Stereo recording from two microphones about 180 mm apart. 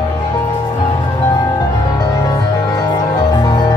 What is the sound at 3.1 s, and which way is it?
Music, 25° left (ahead or behind).